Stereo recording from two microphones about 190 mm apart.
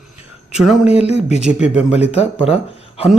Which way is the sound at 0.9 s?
35° left (ahead or behind).